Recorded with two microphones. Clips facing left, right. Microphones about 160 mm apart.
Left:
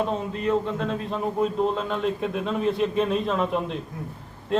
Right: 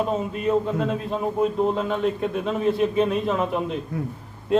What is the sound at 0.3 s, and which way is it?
A man's voice, 10° right (ahead or behind).